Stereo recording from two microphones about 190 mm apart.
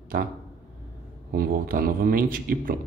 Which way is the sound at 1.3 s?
50° right (ahead or behind).